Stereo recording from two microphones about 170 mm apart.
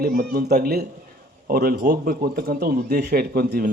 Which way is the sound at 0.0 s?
60° right (ahead or behind).